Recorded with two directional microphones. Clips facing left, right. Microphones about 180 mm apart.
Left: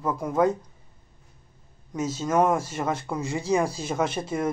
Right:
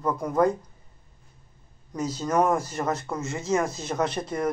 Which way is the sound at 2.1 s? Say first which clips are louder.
Left 1 dB; 5° left (ahead or behind).